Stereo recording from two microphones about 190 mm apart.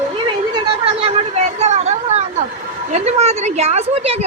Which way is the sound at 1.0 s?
35° right (ahead or behind).